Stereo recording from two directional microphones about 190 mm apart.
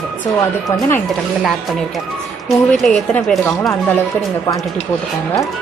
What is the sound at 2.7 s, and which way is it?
A woman's voice, 5° left (ahead or behind).